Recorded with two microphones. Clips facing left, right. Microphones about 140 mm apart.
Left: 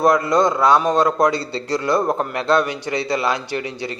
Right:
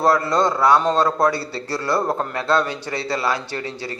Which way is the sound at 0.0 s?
15° left (ahead or behind).